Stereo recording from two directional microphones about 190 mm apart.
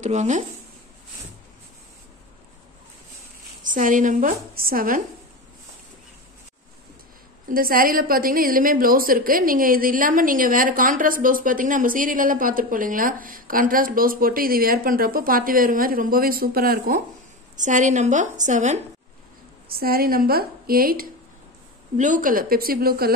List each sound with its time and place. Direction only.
0.0 s a woman's voice: 35° right (ahead or behind)
3.6 s a woman's voice: 45° right (ahead or behind)
7.4 s a woman's voice: 50° right (ahead or behind)
19.7 s a woman's voice: 50° right (ahead or behind)